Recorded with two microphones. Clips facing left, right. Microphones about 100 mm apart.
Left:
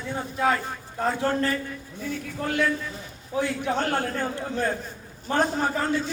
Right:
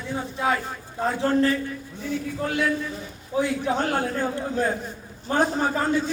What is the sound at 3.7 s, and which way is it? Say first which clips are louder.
A man's voice: right 1 dB; 10° right (ahead or behind).